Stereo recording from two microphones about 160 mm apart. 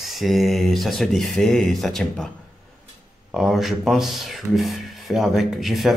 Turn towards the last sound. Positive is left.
turn(degrees=0)  # may be behind; listen again after turning